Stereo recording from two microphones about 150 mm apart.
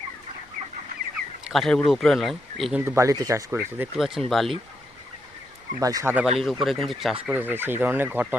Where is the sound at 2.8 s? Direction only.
20° right (ahead or behind).